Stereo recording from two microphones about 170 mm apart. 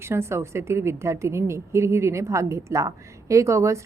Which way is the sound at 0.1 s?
15° right (ahead or behind).